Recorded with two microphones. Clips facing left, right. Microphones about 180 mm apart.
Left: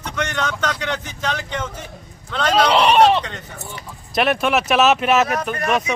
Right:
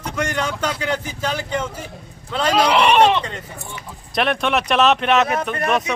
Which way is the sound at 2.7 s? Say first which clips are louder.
Left 1 dB; 30° left (ahead or behind).